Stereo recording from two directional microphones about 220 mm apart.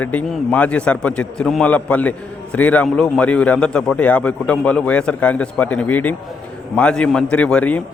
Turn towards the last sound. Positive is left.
turn(degrees=5)  # may be behind; listen again after turning